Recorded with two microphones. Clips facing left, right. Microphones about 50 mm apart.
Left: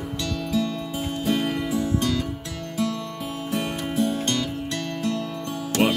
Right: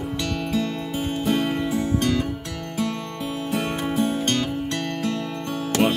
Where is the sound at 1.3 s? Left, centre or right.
Right.